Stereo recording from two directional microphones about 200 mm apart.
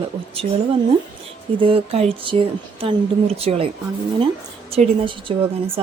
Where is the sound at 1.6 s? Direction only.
30° right (ahead or behind).